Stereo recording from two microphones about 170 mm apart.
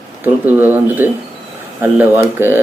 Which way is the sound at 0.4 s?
10° right (ahead or behind).